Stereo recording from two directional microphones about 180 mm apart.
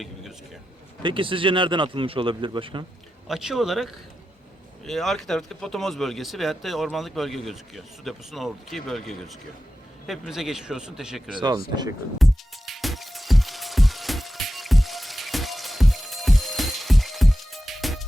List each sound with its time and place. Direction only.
0.0 s a sound: centre (ahead or behind)
1.0 s speech: 30° right (ahead or behind)
3.2 s speech: centre (ahead or behind)
11.3 s speech: 20° right (ahead or behind)
12.2 s music: centre (ahead or behind)